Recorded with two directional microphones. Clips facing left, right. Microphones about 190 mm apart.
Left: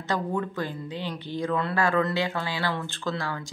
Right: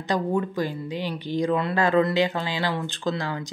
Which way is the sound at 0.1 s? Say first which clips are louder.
Right 4 dB; 15° right (ahead or behind).